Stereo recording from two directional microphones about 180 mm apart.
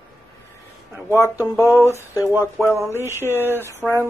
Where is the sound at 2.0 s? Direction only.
15° left (ahead or behind).